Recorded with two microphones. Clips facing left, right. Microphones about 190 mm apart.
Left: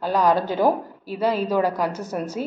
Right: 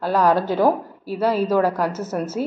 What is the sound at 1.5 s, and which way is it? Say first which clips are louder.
Speech: right 2 dB; 15° left (ahead or behind).